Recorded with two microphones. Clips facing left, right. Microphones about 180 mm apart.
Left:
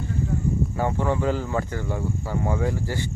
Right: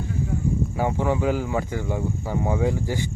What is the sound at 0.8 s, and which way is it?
Speech, 10° right (ahead or behind).